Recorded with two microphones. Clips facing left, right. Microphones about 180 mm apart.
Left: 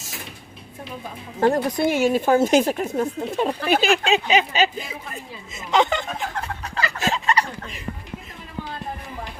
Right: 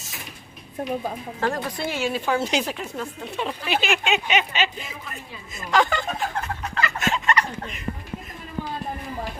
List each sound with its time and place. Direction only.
1.4 s speech: 20° left (ahead or behind)
1.8 s speech: 50° left (ahead or behind)
5.5 s speech: 20° left (ahead or behind)
6.4 s turkey: 35° left (ahead or behind)